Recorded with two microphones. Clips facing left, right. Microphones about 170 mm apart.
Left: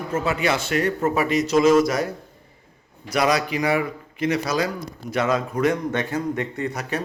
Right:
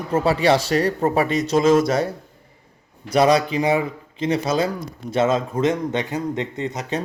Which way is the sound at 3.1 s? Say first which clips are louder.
Right 5 dB; 30° right (ahead or behind).